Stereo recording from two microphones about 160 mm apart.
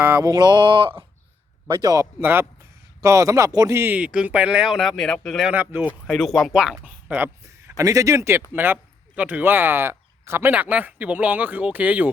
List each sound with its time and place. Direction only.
0.0 s a sound: 15° right (ahead or behind)
1.6 s a man's voice: 25° right (ahead or behind); by 5.5 s centre (ahead or behind)
5.5 s a man's voice: 10° right (ahead or behind)
6.1 s a man's voice: centre (ahead or behind)